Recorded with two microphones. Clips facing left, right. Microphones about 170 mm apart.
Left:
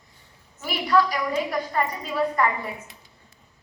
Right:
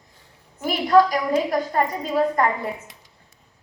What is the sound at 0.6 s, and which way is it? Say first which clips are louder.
A woman's voice: right 5 dB; 45° right (ahead or behind).